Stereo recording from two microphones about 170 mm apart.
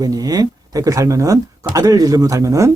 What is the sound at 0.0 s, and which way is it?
Speech, 20° right (ahead or behind).